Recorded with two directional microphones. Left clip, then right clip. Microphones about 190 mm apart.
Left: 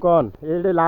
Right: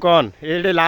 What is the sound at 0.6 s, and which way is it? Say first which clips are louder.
Speech: right 2 dB; 55° right (ahead or behind).